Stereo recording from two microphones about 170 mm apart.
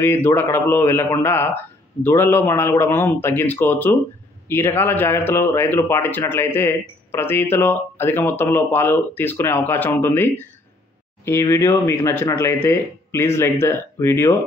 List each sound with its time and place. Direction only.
0.0 s a man's voice: 15° left (ahead or behind)